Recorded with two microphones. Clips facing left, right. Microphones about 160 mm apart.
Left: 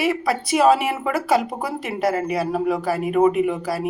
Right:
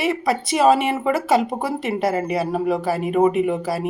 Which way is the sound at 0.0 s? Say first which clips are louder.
Even; centre (ahead or behind).